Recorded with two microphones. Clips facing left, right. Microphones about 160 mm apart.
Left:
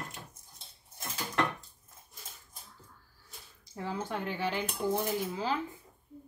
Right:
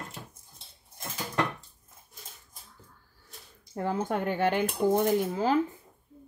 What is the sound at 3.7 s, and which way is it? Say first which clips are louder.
Speech: right 6 dB; 50° right (ahead or behind).